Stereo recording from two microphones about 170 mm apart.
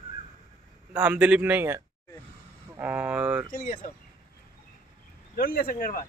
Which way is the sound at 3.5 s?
55° left (ahead or behind).